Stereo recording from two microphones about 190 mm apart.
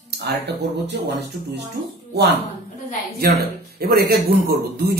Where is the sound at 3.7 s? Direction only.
55° right (ahead or behind).